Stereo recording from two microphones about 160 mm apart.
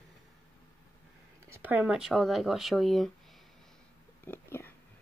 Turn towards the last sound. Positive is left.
turn(degrees=15)  # may be behind; listen again after turning